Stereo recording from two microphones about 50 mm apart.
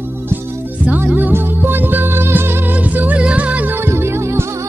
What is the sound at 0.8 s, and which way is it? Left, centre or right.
Music, right.